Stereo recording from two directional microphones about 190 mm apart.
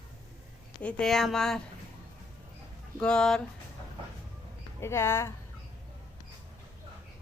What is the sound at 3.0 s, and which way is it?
Speech, 5° left (ahead or behind).